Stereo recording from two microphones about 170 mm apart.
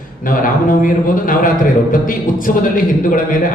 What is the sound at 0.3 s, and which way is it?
A man's voice, 55° left (ahead or behind).